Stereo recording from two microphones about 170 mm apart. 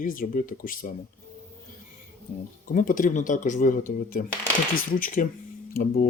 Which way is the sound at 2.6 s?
55° left (ahead or behind).